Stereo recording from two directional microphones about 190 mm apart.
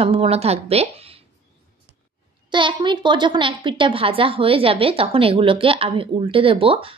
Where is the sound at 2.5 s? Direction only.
25° right (ahead or behind).